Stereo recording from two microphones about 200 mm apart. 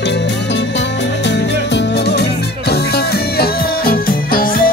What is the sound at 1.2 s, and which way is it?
Music, 60° left (ahead or behind).